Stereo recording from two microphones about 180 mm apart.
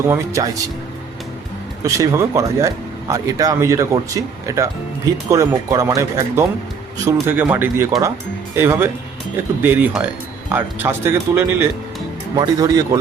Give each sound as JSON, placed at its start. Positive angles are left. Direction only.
{"t": 0.1, "sound": "speech", "side_deg": -20}
{"t": 1.8, "sound": "speech", "side_deg": -15}